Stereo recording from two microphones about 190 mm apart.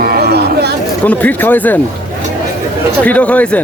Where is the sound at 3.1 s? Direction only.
5° left (ahead or behind).